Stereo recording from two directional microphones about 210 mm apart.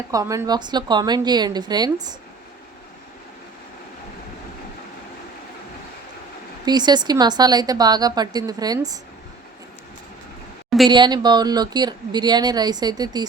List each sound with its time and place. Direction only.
0.1 s speech: 15° right (ahead or behind)
6.7 s speech: 20° right (ahead or behind)
10.8 s speech: 20° right (ahead or behind)